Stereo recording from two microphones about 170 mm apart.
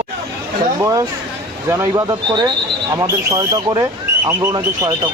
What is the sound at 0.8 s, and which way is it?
Speech, 20° right (ahead or behind).